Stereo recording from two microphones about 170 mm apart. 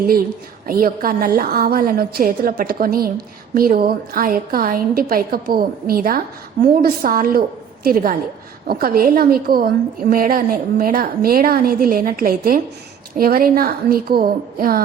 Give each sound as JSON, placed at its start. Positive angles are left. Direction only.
{"t": 0.7, "sound": "a woman's voice", "side_deg": -60}